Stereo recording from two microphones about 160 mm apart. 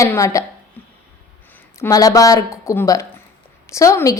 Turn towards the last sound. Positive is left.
turn(degrees=20)  # may be behind; listen again after turning